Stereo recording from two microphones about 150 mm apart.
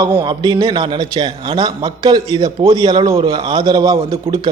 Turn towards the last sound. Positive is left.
turn(degrees=-30)  # may be behind; listen again after turning